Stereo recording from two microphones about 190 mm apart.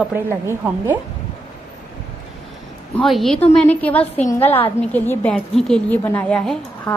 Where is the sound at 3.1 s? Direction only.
Centre (ahead or behind).